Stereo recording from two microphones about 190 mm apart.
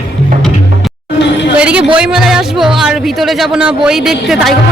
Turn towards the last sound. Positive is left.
turn(degrees=0)  # may be behind; listen again after turning